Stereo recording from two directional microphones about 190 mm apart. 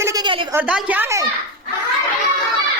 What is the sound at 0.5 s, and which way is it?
Speech, 5° right (ahead or behind).